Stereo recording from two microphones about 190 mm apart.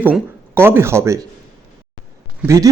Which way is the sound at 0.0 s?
10° right (ahead or behind).